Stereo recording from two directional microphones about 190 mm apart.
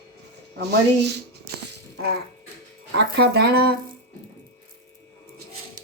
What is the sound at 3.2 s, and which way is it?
Speech, 60° right (ahead or behind).